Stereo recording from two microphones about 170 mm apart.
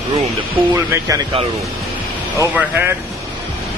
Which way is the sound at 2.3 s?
10° right (ahead or behind).